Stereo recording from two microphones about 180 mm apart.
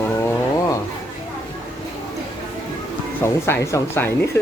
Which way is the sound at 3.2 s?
15° left (ahead or behind).